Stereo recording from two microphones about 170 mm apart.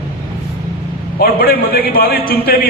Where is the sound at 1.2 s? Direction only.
60° left (ahead or behind).